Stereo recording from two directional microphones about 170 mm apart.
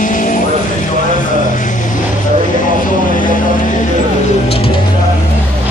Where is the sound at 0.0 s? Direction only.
50° left (ahead or behind).